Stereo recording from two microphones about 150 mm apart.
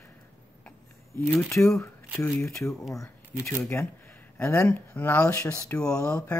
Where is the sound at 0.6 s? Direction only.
15° left (ahead or behind).